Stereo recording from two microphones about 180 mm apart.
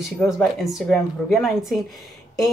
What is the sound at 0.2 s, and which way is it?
Speech, 5° left (ahead or behind).